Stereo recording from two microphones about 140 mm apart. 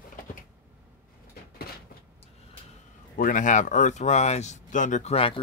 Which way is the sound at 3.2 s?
70° left (ahead or behind).